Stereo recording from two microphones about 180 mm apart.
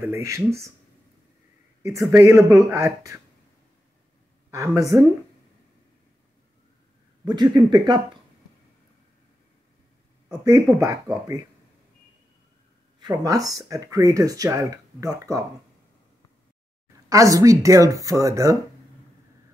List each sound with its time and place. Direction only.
0.0 s speech: 15° right (ahead or behind)
1.8 s speech: 15° right (ahead or behind)
4.5 s speech: 15° right (ahead or behind)
7.2 s speech: 25° right (ahead or behind)
10.4 s speech: 15° right (ahead or behind)
13.0 s speech: 20° right (ahead or behind)
17.1 s speech: 20° right (ahead or behind)